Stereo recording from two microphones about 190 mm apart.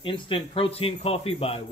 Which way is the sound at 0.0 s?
25° left (ahead or behind).